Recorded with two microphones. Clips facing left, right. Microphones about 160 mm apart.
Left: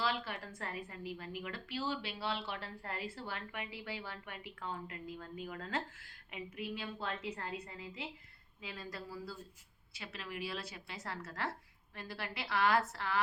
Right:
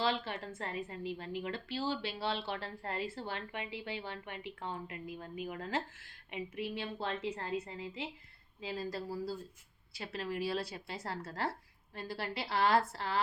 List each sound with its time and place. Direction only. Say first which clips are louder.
0.0 s a woman's voice: right 3 dB; 25° right (ahead or behind)